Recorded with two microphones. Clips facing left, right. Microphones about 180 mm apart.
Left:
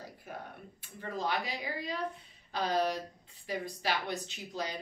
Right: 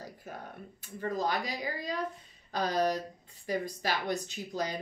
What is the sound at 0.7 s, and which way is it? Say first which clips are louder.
A woman's voice: right 5 dB; 40° right (ahead or behind).